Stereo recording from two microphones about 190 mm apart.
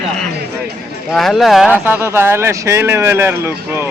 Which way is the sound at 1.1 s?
Centre (ahead or behind).